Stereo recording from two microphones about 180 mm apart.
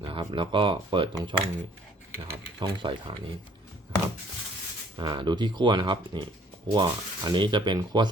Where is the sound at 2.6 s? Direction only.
25° right (ahead or behind).